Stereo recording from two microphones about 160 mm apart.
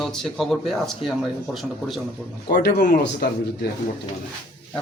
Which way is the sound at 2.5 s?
65° left (ahead or behind).